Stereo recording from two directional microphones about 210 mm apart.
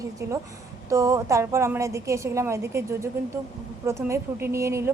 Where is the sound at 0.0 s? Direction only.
15° right (ahead or behind).